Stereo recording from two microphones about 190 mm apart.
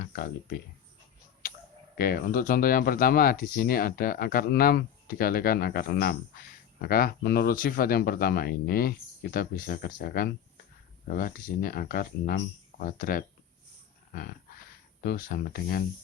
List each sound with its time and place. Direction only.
2.0 s speech: 50° left (ahead or behind)
14.1 s dog: 50° left (ahead or behind)
15.0 s speech: 50° left (ahead or behind)